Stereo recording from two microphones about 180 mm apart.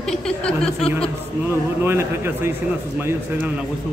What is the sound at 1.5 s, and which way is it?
Speech, 15° right (ahead or behind).